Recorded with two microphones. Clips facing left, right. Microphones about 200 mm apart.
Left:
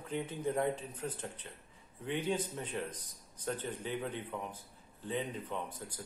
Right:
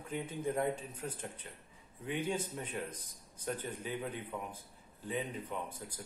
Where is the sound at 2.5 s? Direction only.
30° left (ahead or behind).